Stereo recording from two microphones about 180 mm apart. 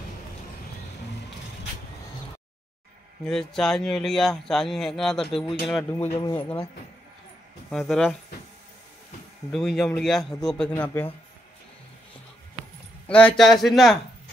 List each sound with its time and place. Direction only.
3.3 s speech: 5° left (ahead or behind)
7.7 s speech: centre (ahead or behind)
9.5 s speech: centre (ahead or behind)
13.1 s speech: 5° left (ahead or behind)